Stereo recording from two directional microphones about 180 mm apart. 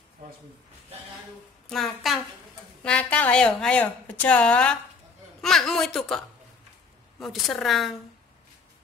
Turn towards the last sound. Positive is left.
turn(degrees=0)  # may be behind; listen again after turning